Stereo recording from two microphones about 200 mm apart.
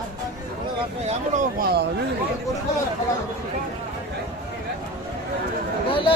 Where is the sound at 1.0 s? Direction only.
40° right (ahead or behind).